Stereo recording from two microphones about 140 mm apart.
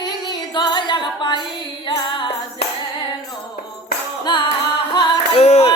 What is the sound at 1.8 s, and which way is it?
Singing, 35° left (ahead or behind).